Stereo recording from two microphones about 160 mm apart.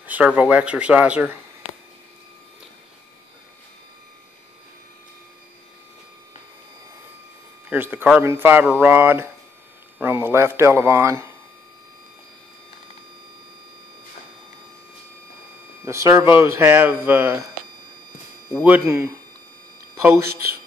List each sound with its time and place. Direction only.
0.0 s speech: 10° right (ahead or behind)
7.7 s speech: 10° right (ahead or behind)
15.8 s speech: 20° right (ahead or behind)
18.5 s speech: 10° right (ahead or behind)